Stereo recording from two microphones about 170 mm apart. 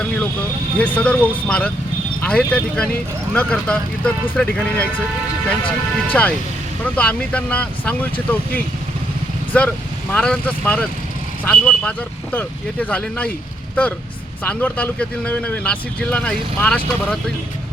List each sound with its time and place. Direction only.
0.8 s speech: 10° left (ahead or behind)
14.4 s speech: 10° left (ahead or behind)